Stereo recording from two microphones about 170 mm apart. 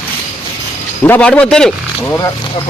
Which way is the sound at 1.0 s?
10° left (ahead or behind).